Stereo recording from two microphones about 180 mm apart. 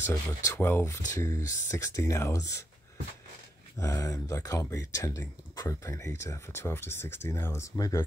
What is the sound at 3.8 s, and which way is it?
Speech, 20° left (ahead or behind).